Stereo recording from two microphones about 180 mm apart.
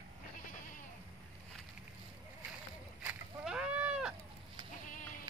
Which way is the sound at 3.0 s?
5° right (ahead or behind).